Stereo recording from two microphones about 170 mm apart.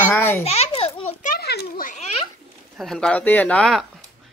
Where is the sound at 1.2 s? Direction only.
60° left (ahead or behind).